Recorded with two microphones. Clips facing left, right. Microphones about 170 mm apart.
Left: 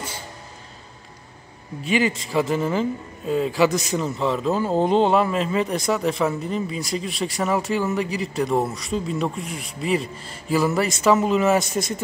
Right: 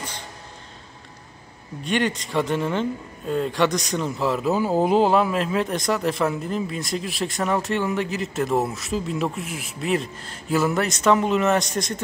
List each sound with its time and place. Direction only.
1.9 s a man's voice: 5° left (ahead or behind)